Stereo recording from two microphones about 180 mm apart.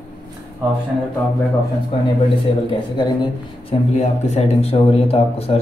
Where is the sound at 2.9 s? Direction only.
25° left (ahead or behind).